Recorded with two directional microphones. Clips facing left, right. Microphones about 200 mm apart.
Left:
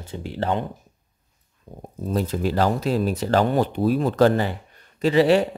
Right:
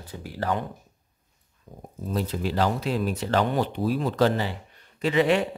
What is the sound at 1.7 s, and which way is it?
Speech, 25° left (ahead or behind).